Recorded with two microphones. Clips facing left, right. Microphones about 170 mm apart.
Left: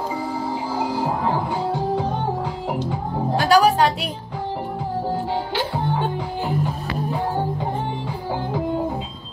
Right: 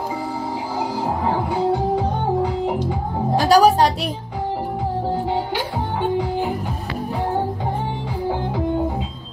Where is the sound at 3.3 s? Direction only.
40° right (ahead or behind).